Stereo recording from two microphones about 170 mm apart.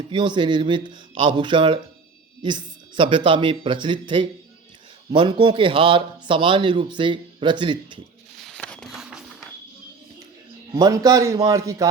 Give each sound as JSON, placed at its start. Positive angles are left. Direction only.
{"t": 0.1, "sound": "a man's voice", "side_deg": -25}
{"t": 8.4, "sound": "a sound", "side_deg": 0}
{"t": 10.8, "sound": "a man's voice", "side_deg": -20}